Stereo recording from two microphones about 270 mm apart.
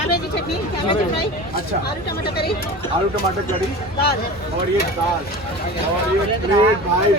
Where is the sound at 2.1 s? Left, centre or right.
Left.